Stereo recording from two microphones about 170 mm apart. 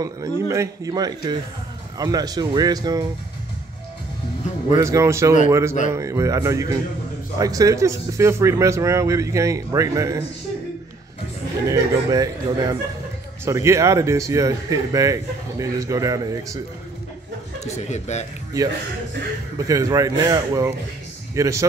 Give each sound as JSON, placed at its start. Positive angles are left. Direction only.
{"t": 0.0, "sound": "speech", "side_deg": -20}
{"t": 4.6, "sound": "speech", "side_deg": -20}
{"t": 11.7, "sound": "speech", "side_deg": -20}
{"t": 17.6, "sound": "a man's voice", "side_deg": 40}
{"t": 19.6, "sound": "speech", "side_deg": -20}